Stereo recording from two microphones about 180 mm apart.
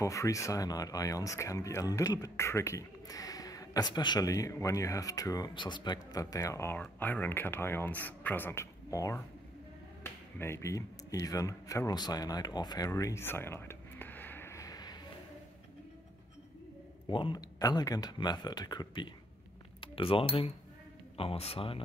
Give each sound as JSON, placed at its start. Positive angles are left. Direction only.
{"t": 0.0, "sound": "speech", "side_deg": 20}
{"t": 17.1, "sound": "speech", "side_deg": 25}